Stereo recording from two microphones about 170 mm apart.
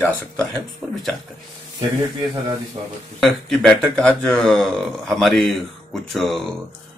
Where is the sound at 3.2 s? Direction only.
Centre (ahead or behind).